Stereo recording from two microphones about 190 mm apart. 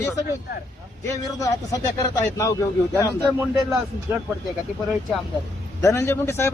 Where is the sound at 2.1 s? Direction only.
15° left (ahead or behind).